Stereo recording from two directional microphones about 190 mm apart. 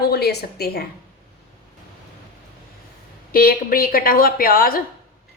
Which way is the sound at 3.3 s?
50° left (ahead or behind).